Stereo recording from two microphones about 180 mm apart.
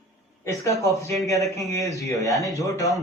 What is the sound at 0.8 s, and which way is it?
A man's voice, 15° left (ahead or behind).